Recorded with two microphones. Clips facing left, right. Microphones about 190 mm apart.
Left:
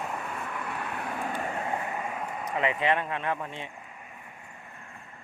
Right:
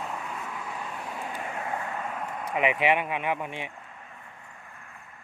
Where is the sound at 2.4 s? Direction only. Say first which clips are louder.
Right 2 dB; 15° right (ahead or behind).